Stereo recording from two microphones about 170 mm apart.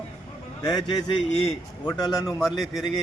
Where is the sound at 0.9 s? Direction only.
35° left (ahead or behind).